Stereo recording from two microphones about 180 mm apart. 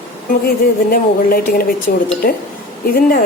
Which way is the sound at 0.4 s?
55° left (ahead or behind).